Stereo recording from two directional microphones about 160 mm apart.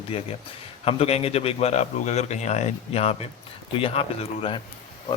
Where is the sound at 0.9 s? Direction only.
40° left (ahead or behind).